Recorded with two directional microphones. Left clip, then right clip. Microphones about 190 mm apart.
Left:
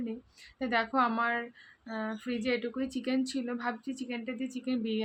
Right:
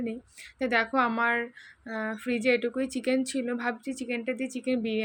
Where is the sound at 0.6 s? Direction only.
15° right (ahead or behind).